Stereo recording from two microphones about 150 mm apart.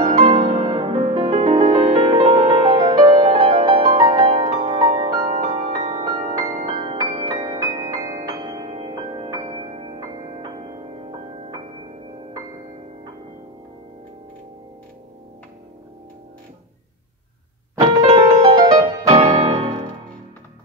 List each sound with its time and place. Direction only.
0.0 s music: 45° right (ahead or behind)
2.2 s music: 40° right (ahead or behind)
7.8 s music: 25° right (ahead or behind)
8.6 s music: 40° right (ahead or behind)
9.1 s music: 30° right (ahead or behind)
17.7 s music: 30° right (ahead or behind)
19.0 s music: 40° right (ahead or behind)